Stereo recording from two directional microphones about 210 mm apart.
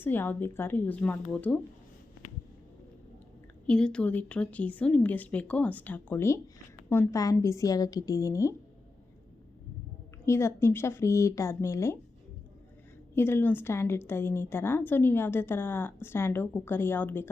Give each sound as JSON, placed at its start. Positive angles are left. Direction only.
{"t": 0.0, "sound": "a woman's voice", "side_deg": 10}
{"t": 3.7, "sound": "a woman's voice", "side_deg": 5}
{"t": 10.2, "sound": "a woman's voice", "side_deg": 10}
{"t": 13.1, "sound": "a woman's voice", "side_deg": 10}